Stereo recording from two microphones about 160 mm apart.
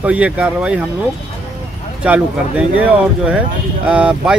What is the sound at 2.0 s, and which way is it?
Speech, 10° right (ahead or behind).